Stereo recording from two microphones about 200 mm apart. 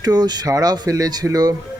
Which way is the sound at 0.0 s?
20° right (ahead or behind).